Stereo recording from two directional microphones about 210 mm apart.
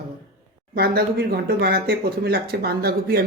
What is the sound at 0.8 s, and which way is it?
Speech, 50° right (ahead or behind).